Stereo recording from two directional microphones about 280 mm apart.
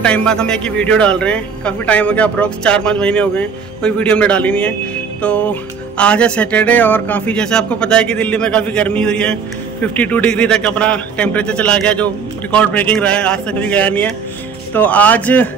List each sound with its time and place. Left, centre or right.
0.0 s music: centre